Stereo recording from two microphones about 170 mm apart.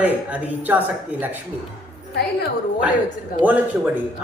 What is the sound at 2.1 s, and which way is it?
Speech, 65° left (ahead or behind).